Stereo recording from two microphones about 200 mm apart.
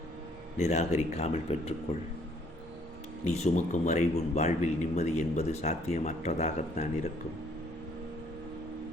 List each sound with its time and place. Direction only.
0.6 s speech: 30° left (ahead or behind)
3.4 s speech: 35° left (ahead or behind)